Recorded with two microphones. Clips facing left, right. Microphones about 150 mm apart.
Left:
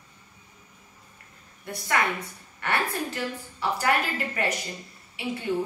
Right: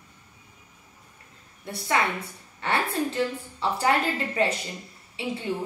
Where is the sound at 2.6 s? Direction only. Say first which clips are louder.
Right 2 dB; 25° right (ahead or behind).